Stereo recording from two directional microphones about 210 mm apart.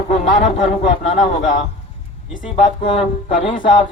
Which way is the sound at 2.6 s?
25° left (ahead or behind).